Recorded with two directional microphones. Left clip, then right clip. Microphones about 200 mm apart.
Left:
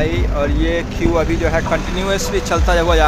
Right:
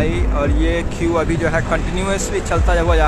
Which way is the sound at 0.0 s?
5° left (ahead or behind).